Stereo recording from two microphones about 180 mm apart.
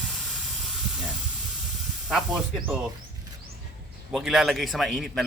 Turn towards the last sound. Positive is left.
turn(degrees=0)  # may be behind; listen again after turning